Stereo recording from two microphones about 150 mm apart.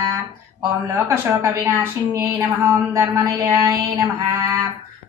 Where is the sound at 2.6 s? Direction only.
20° right (ahead or behind).